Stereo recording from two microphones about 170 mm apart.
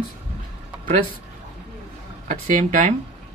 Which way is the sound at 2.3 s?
50° right (ahead or behind).